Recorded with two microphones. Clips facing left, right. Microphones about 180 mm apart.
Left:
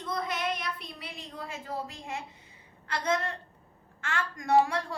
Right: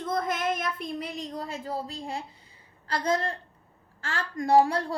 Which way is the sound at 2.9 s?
35° right (ahead or behind).